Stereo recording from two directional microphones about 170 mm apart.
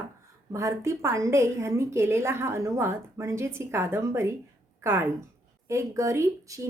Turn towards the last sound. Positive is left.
turn(degrees=-15)  # may be behind; listen again after turning